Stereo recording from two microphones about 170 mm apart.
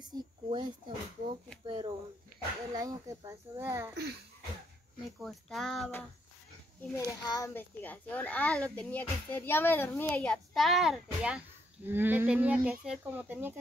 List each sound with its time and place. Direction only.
0.0 s speech: 25° right (ahead or behind)
1.7 s a sound: 30° right (ahead or behind)
2.7 s a child's voice: 20° right (ahead or behind)
3.9 s speech: 75° right (ahead or behind)
5.2 s child singing: centre (ahead or behind)
7.1 s a child's voice: 20° left (ahead or behind); by 13.6 s 10° right (ahead or behind)